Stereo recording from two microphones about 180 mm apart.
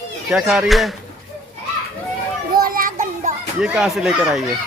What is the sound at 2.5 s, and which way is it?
Child singing, 50° right (ahead or behind).